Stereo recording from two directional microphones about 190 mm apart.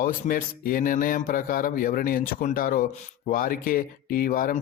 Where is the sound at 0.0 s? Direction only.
45° left (ahead or behind).